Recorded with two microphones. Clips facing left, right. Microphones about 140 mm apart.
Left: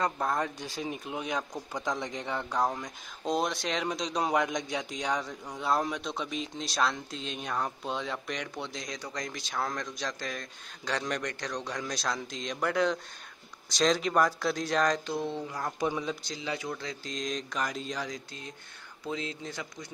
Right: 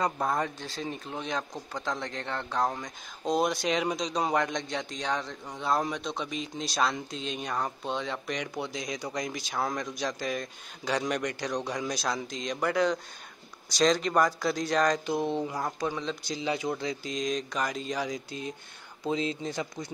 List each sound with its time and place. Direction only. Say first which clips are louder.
0.0 s a man's voice: right 1 dB; 5° right (ahead or behind)
0.6 s a man's voice: even; 10° left (ahead or behind)
15.0 s speech: right 4 dB; 15° right (ahead or behind)
15.8 s speech: left 4 dB; 10° left (ahead or behind)
16.3 s speech: right 5 dB; 20° right (ahead or behind)
17.0 s a man's voice: right 4 dB; 5° right (ahead or behind)
19.0 s speech: right 6 dB; 25° right (ahead or behind)